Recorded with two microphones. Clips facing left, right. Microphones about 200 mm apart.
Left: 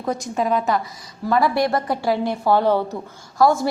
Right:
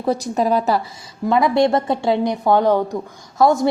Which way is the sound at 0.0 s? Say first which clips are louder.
Right 4 dB; 35° right (ahead or behind).